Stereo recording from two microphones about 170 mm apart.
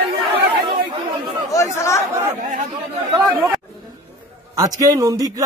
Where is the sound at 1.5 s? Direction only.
15° left (ahead or behind).